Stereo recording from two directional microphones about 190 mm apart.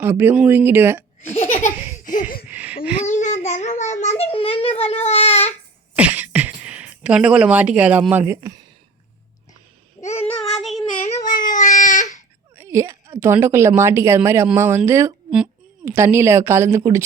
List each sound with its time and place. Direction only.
0.0 s speech: 10° right (ahead or behind)
1.3 s laughter: 35° left (ahead or behind)
2.5 s a sound: 10° right (ahead or behind)
2.8 s a child's voice: 5° right (ahead or behind)
3.1 s a child's voice: 40° left (ahead or behind)
6.0 s a sound: 10° right (ahead or behind)
10.0 s child singing: 40° left (ahead or behind)
10.2 s child singing: centre (ahead or behind)
11.1 s baby cry: 20° left (ahead or behind)
11.5 s baby cry: 40° left (ahead or behind)
12.5 s a woman's voice: 15° right (ahead or behind)